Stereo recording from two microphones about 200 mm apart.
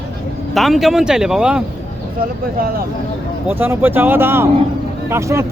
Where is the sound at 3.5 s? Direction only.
10° right (ahead or behind).